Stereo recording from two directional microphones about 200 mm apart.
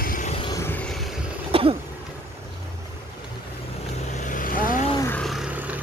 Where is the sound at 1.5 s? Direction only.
30° right (ahead or behind).